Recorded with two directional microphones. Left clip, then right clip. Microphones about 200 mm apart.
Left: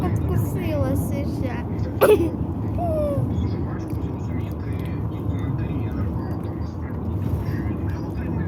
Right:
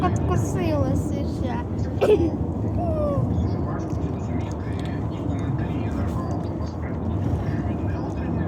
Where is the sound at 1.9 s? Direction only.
55° left (ahead or behind).